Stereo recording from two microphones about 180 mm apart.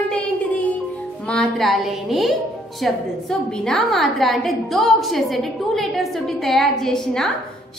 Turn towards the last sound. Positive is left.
turn(degrees=0)  # may be behind; listen again after turning